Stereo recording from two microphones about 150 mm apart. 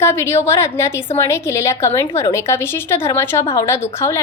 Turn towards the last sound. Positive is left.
turn(degrees=15)  # may be behind; listen again after turning